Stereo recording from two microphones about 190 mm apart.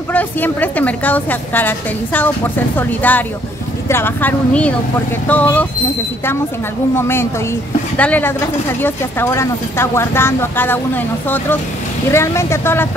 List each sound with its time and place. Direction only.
0.1 s a woman's voice: 10° left (ahead or behind)
7.0 s a woman's voice: 15° left (ahead or behind)